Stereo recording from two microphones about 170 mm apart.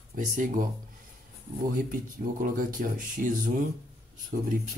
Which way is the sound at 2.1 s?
55° right (ahead or behind).